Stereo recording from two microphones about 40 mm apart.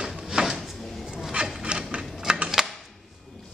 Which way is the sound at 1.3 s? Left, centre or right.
Right.